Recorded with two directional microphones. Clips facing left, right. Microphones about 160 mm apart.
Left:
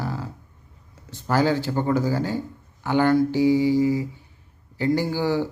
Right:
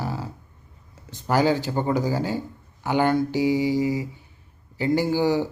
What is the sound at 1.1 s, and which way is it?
Speech, 15° right (ahead or behind).